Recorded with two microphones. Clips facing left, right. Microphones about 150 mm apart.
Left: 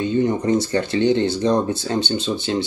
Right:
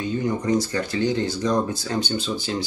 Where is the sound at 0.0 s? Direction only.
25° left (ahead or behind).